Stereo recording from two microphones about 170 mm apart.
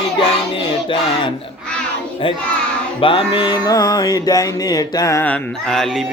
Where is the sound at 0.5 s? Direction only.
30° left (ahead or behind).